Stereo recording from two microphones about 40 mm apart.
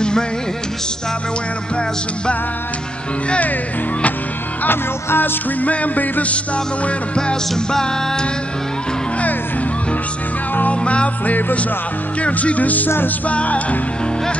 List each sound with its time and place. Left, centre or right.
4.6 s speech: left
5.6 s music: left
6.3 s music: left
7.2 s music: centre
10.7 s music: left
11.2 s speech: left
12.2 s music: left